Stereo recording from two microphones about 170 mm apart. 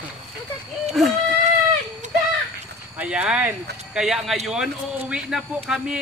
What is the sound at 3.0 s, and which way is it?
Speech, 5° right (ahead or behind).